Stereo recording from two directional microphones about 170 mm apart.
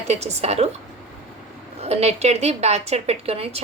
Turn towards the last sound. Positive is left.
turn(degrees=-35)  # may be behind; listen again after turning